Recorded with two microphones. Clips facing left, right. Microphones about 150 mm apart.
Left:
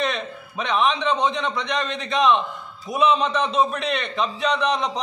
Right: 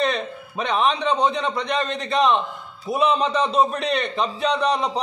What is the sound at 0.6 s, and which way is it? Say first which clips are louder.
A man's voice: even; 35° right (ahead or behind).